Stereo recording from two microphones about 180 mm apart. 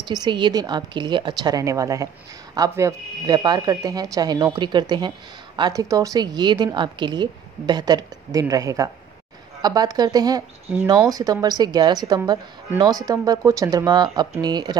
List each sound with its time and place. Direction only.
0.0 s a woman's voice: 25° right (ahead or behind)